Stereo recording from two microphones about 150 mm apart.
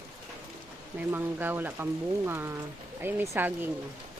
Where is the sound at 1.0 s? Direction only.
15° right (ahead or behind).